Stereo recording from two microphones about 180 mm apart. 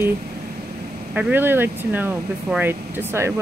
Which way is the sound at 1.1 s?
10° right (ahead or behind).